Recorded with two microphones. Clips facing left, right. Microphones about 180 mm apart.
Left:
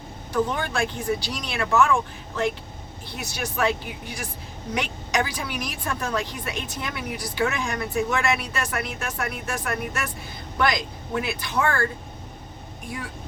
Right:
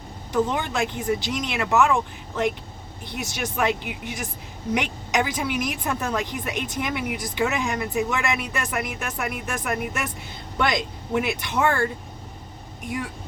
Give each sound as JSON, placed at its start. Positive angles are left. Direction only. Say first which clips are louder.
{"t": 0.4, "sound": "a woman's voice", "louder": "right 1 dB", "side_deg": -20}
{"t": 3.6, "sound": "a woman's voice", "louder": "even", "side_deg": -20}